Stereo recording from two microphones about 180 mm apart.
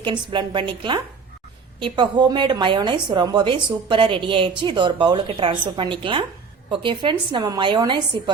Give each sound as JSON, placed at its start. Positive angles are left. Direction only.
{"t": 0.0, "sound": "a woman's voice", "side_deg": -25}